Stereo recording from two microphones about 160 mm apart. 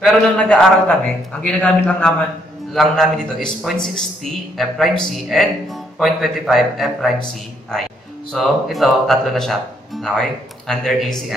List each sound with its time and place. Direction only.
0.0 s a man's voice: 5° left (ahead or behind)
8.3 s a man's voice: centre (ahead or behind)